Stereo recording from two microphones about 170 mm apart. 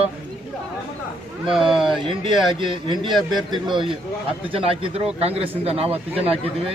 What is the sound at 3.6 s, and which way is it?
A man's voice, 30° right (ahead or behind).